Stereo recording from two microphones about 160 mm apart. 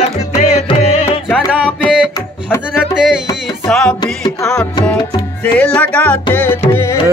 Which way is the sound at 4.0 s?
25° left (ahead or behind).